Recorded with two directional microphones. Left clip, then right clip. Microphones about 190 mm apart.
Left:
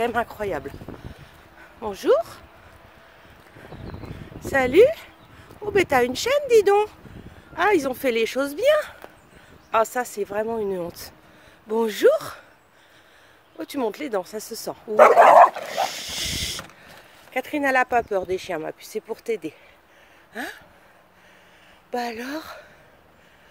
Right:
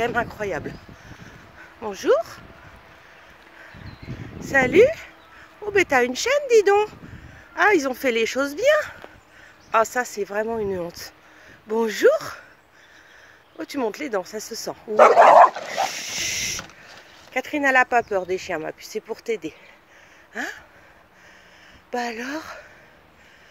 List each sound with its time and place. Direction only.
0.0 s speech: 15° left (ahead or behind)
1.8 s speech: 15° left (ahead or behind)
4.5 s speech: 15° left (ahead or behind)
13.6 s speech: 5° left (ahead or behind)
21.9 s speech: 5° left (ahead or behind)